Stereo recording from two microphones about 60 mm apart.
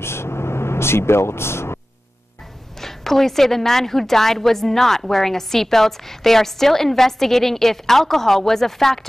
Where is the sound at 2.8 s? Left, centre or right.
Centre.